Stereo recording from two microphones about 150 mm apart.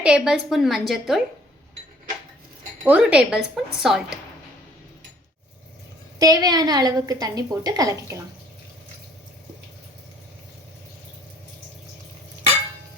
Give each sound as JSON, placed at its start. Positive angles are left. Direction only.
{"t": 0.0, "sound": "speech", "side_deg": -5}
{"t": 2.8, "sound": "speech", "side_deg": -10}
{"t": 6.1, "sound": "a woman's voice", "side_deg": -25}